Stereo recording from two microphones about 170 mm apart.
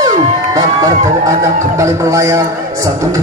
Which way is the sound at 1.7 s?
20° right (ahead or behind).